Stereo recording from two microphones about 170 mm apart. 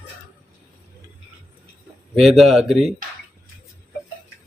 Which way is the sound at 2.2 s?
Centre (ahead or behind).